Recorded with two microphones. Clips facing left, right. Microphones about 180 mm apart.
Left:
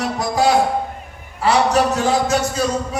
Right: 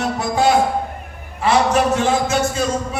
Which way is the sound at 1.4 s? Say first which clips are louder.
Even; 40° left (ahead or behind).